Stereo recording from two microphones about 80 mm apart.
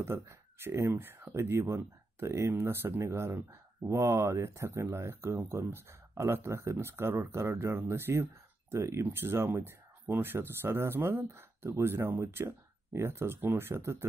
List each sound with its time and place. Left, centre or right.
0.0 s speech: right